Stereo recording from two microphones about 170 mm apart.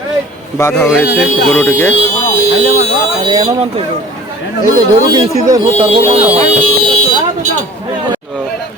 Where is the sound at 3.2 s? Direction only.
30° right (ahead or behind).